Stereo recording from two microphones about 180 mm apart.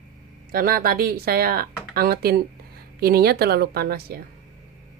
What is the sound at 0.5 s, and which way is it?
Speech, 55° right (ahead or behind).